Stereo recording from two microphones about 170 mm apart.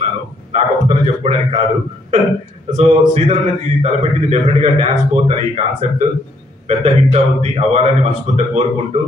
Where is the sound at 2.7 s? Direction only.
40° right (ahead or behind).